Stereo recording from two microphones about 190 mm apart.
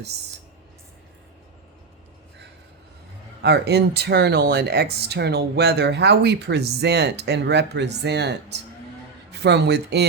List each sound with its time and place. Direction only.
3.4 s speech: 60° right (ahead or behind)